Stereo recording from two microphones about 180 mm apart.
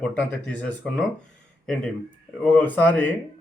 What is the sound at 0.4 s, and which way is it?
Speech, 5° left (ahead or behind).